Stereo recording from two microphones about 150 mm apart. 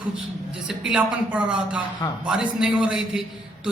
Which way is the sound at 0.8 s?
5° right (ahead or behind).